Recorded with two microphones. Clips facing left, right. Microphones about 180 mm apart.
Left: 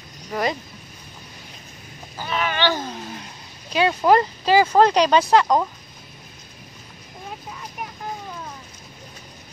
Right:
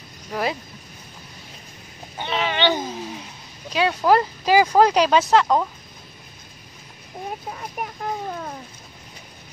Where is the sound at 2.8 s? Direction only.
Centre (ahead or behind).